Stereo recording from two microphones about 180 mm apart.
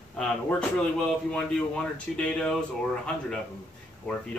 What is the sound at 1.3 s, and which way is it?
Speech, 5° left (ahead or behind).